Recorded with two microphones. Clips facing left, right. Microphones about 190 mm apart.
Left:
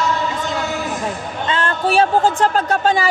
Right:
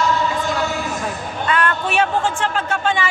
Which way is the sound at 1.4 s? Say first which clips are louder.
Left 1 dB; 25° left (ahead or behind).